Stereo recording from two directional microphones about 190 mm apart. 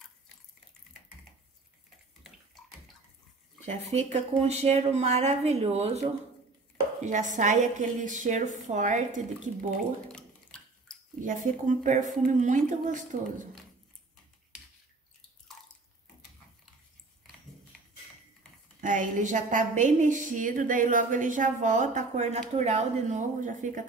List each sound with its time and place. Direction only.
3.6 s a woman's voice: 35° right (ahead or behind)
10.1 s a sound: 5° left (ahead or behind)
11.1 s a woman's voice: 40° right (ahead or behind)
18.8 s a woman's voice: 45° right (ahead or behind)